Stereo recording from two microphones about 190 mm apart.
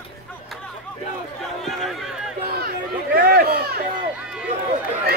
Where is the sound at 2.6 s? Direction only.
50° right (ahead or behind).